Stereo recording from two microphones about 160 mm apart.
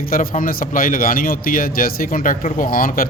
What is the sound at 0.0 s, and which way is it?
A man's voice, 60° left (ahead or behind).